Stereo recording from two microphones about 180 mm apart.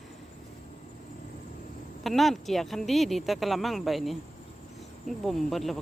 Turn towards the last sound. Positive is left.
turn(degrees=0)  # may be behind; listen again after turning